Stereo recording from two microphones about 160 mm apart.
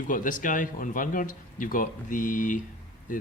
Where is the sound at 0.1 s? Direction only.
55° left (ahead or behind).